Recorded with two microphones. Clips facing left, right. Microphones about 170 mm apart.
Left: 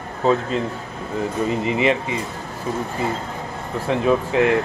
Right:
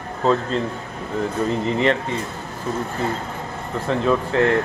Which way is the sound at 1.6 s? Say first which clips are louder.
Left 1 dB; 10° left (ahead or behind).